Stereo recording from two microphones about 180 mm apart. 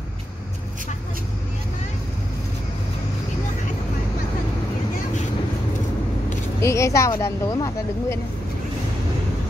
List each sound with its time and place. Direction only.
6.6 s speech: 15° left (ahead or behind)